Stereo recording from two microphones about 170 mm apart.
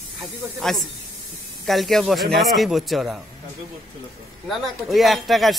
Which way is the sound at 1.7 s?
Centre (ahead or behind).